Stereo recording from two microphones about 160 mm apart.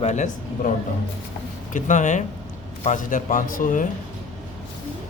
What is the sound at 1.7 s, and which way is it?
A man's voice, 50° left (ahead or behind).